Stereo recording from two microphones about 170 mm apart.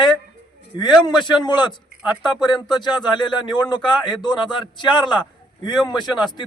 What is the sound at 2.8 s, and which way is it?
A man's voice, 25° left (ahead or behind).